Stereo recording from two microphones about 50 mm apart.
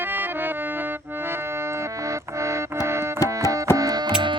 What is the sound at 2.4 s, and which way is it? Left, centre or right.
Music, right.